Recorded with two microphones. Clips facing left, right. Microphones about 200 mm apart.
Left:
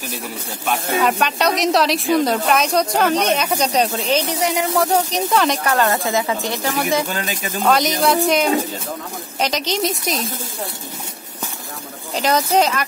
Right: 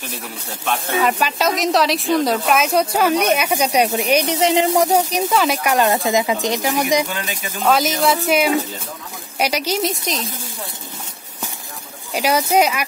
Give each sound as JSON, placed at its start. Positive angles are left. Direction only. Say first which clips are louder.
{"t": 1.1, "sound": "a woman's voice", "louder": "left 1 dB", "side_deg": 0}
{"t": 4.8, "sound": "a woman's voice", "louder": "right 1 dB", "side_deg": -10}
{"t": 7.6, "sound": "speech", "louder": "even", "side_deg": 0}
{"t": 12.1, "sound": "a woman's voice", "louder": "even", "side_deg": -10}